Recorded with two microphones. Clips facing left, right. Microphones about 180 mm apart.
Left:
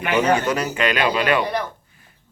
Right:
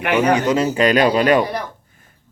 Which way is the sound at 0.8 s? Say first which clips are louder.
Right 7 dB; 40° right (ahead or behind).